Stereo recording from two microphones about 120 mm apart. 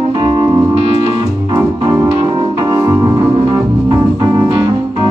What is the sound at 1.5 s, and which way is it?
Organ, 35° right (ahead or behind).